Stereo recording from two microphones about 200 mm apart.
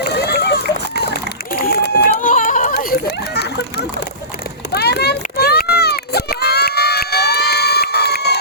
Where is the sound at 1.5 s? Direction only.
50° left (ahead or behind).